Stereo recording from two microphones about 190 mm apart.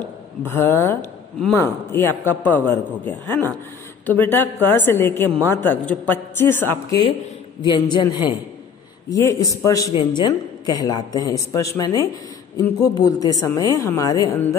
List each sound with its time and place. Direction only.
0.4 s a man's voice: 10° left (ahead or behind)
7.6 s a man's voice: 25° left (ahead or behind)